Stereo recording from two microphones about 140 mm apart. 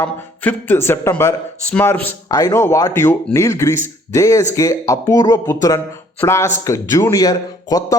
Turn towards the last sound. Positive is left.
turn(degrees=25)  # may be behind; listen again after turning